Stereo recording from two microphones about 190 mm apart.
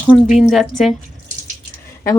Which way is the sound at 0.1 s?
Centre (ahead or behind).